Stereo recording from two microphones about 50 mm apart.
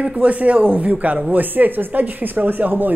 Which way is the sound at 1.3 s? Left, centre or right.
Right.